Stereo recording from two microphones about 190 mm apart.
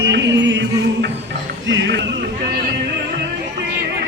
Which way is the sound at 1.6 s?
70° right (ahead or behind).